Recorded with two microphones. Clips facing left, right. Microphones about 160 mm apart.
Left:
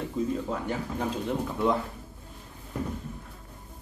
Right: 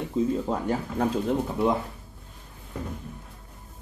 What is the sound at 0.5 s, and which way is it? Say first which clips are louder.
Speech: right 4 dB; 40° right (ahead or behind).